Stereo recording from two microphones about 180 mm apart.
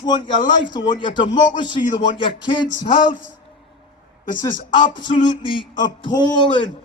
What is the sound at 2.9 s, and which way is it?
Speech, 45° left (ahead or behind).